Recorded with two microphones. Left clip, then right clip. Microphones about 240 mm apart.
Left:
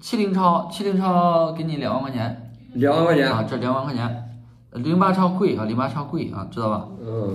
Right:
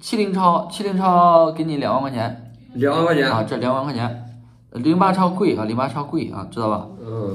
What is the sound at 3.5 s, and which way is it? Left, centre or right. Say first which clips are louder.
Speech: right 3 dB; right.